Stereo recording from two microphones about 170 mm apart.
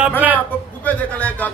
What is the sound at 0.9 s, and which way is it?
Speech, 10° left (ahead or behind).